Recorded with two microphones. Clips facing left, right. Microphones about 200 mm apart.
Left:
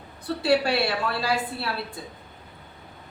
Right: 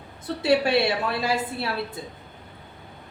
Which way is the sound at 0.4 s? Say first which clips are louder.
Right 2 dB; 20° right (ahead or behind).